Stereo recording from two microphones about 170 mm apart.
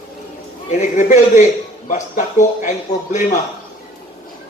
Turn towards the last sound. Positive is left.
turn(degrees=45)  # may be behind; listen again after turning